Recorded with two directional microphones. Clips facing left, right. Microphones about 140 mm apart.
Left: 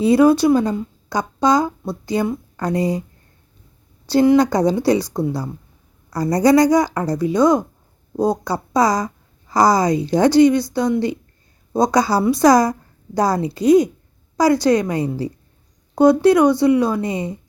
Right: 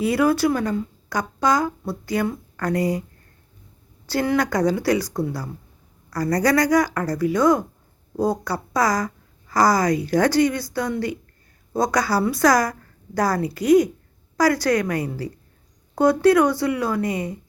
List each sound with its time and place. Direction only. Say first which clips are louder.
0.0 s speech: left 6 dB; 25° left (ahead or behind)
4.1 s speech: left 8 dB; 20° left (ahead or behind)